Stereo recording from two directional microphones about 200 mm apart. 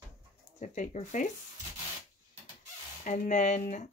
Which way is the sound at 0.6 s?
35° left (ahead or behind).